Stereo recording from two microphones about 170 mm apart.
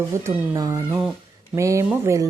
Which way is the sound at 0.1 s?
20° right (ahead or behind).